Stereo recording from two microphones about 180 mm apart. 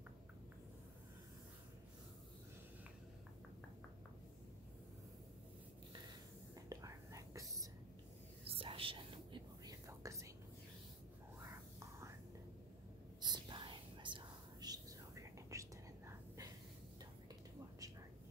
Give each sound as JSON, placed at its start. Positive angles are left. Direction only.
{"t": 6.7, "sound": "whispering", "side_deg": -20}
{"t": 8.5, "sound": "whispering", "side_deg": -30}
{"t": 9.8, "sound": "whispering", "side_deg": -15}
{"t": 13.2, "sound": "whispering", "side_deg": -25}